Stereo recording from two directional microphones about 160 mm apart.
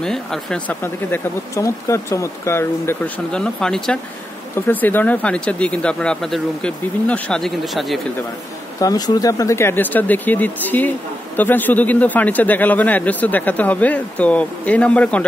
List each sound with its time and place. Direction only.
0.0 s a man's voice: 5° left (ahead or behind)
3.3 s a man's voice: 5° left (ahead or behind)
8.7 s a man's voice: 25° left (ahead or behind); by 15.2 s 10° left (ahead or behind)